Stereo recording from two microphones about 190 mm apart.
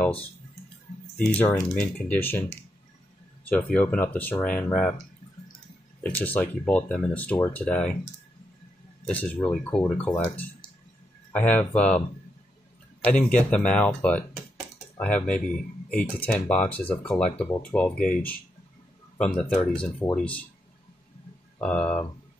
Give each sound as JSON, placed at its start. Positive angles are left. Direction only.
{"t": 1.1, "sound": "speech", "side_deg": 5}
{"t": 3.7, "sound": "speech", "side_deg": 10}
{"t": 6.0, "sound": "speech", "side_deg": 10}
{"t": 9.0, "sound": "speech", "side_deg": 5}
{"t": 13.0, "sound": "speech", "side_deg": 5}
{"t": 21.5, "sound": "speech", "side_deg": 5}